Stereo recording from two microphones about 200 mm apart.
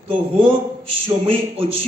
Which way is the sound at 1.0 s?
30° right (ahead or behind).